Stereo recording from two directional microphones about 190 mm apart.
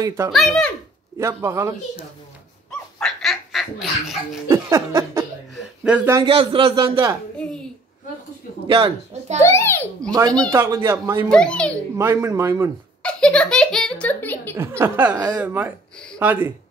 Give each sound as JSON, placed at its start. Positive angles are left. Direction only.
{"t": 0.3, "sound": "a child's voice", "side_deg": 0}
{"t": 1.2, "sound": "speech", "side_deg": -15}
{"t": 3.0, "sound": "duck", "side_deg": 5}
{"t": 4.5, "sound": "speech", "side_deg": -15}
{"t": 6.2, "sound": "a man's voice", "side_deg": -25}
{"t": 7.3, "sound": "a sound", "side_deg": 5}
{"t": 8.6, "sound": "a man's voice", "side_deg": -30}
{"t": 9.4, "sound": "a child's voice", "side_deg": 15}
{"t": 10.4, "sound": "speech", "side_deg": -15}
{"t": 11.2, "sound": "a child's voice", "side_deg": 5}
{"t": 12.0, "sound": "speech", "side_deg": -15}
{"t": 13.0, "sound": "a child's voice", "side_deg": 5}
{"t": 14.5, "sound": "speech", "side_deg": -15}